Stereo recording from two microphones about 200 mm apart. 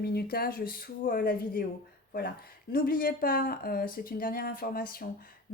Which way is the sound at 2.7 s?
45° left (ahead or behind).